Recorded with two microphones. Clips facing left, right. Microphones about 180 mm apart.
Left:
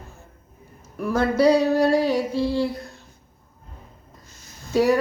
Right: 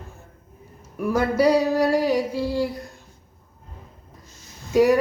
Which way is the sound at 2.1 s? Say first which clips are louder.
Even; 10° right (ahead or behind).